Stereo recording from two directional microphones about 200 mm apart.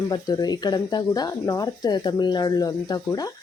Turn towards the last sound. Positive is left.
turn(degrees=20)  # may be behind; listen again after turning